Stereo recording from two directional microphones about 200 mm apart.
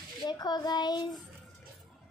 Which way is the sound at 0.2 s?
20° left (ahead or behind).